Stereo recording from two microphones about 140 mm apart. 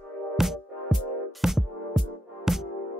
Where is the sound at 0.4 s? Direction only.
5° right (ahead or behind).